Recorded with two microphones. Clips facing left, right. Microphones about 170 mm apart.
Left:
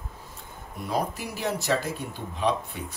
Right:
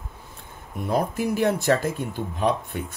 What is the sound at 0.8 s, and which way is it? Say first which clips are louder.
Speech: right 5 dB; 50° right (ahead or behind).